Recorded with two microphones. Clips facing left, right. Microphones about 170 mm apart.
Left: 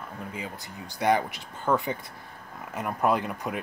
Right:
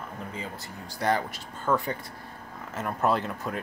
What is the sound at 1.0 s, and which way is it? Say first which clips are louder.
Speech: left 3 dB; 20° left (ahead or behind).